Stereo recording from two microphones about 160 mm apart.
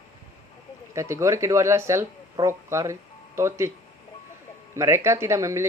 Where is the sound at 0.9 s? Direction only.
15° right (ahead or behind).